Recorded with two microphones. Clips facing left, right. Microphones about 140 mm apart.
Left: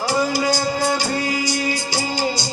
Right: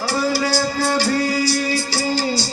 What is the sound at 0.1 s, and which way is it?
Music, 15° left (ahead or behind).